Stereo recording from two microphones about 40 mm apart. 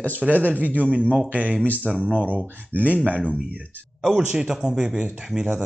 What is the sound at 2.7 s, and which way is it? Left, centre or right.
Speech, right.